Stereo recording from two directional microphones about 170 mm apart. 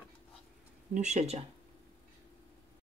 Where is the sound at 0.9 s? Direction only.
45° right (ahead or behind).